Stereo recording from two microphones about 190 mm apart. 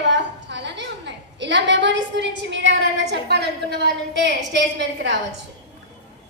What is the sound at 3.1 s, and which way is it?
A woman's voice, 60° right (ahead or behind).